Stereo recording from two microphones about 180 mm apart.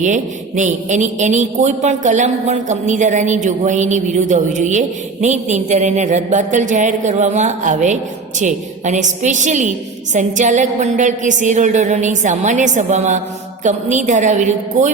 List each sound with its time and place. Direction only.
0.0 s a woman's voice: 45° right (ahead or behind)